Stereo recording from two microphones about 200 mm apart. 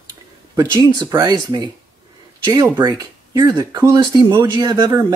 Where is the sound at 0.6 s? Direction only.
20° right (ahead or behind).